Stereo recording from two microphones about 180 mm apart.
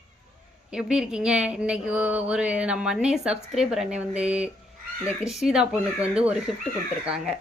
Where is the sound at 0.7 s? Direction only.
5° right (ahead or behind).